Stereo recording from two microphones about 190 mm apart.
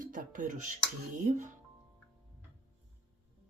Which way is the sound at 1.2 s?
40° right (ahead or behind).